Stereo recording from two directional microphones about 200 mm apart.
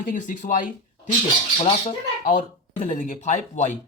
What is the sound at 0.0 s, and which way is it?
Speech, 40° left (ahead or behind).